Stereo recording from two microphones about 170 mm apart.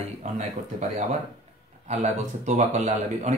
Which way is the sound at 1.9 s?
45° right (ahead or behind).